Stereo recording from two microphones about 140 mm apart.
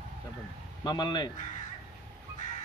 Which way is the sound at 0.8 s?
30° left (ahead or behind).